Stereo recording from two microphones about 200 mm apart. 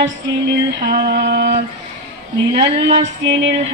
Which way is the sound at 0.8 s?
55° right (ahead or behind).